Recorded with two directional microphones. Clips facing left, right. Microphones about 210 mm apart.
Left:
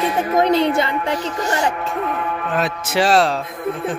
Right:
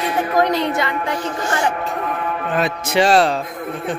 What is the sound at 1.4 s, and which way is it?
Speech, 40° left (ahead or behind).